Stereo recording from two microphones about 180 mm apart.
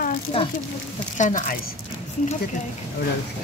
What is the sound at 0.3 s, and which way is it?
Speech, 35° left (ahead or behind).